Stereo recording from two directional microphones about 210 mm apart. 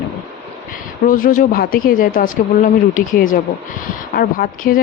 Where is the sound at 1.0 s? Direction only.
40° left (ahead or behind).